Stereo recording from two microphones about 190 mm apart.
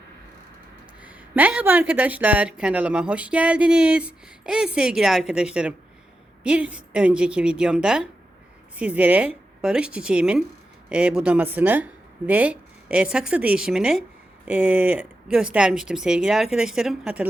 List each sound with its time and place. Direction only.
1.0 s a woman's voice: 10° right (ahead or behind)